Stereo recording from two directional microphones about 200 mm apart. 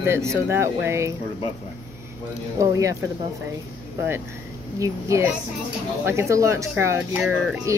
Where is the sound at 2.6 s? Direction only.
15° right (ahead or behind).